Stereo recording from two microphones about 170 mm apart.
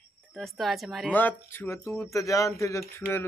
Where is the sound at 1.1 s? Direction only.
10° left (ahead or behind).